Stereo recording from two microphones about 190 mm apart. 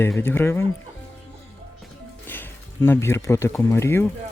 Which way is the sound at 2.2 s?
10° left (ahead or behind).